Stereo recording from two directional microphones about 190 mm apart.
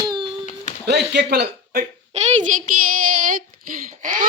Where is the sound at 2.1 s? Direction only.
35° right (ahead or behind).